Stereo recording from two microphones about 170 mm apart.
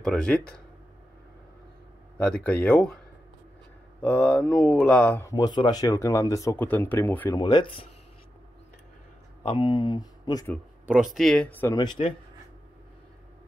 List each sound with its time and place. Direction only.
0.0 s speech: 5° left (ahead or behind)
2.1 s speech: 5° left (ahead or behind)
4.0 s speech: 10° left (ahead or behind)
5.2 s speech: 20° left (ahead or behind)
7.3 s speech: 25° left (ahead or behind)
9.4 s speech: 30° left (ahead or behind)
11.1 s speech: 5° left (ahead or behind)
11.7 s speech: 25° left (ahead or behind)